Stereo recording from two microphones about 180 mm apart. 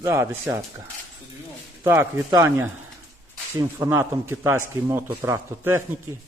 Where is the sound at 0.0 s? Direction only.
15° right (ahead or behind).